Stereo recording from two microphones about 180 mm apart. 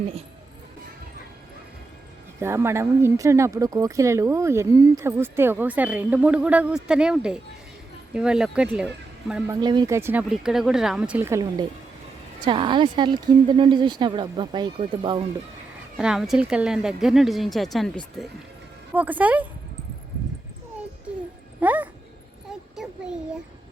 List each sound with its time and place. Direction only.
2.4 s speech: 15° right (ahead or behind)
9.5 s speech: 25° right (ahead or behind)
16.0 s speech: 5° right (ahead or behind)
18.9 s speech: 10° right (ahead or behind)
21.6 s speech: 10° right (ahead or behind)
22.7 s a sound: centre (ahead or behind)